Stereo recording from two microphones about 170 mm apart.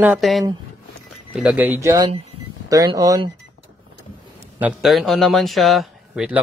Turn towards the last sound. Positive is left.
turn(degrees=0)  # may be behind; listen again after turning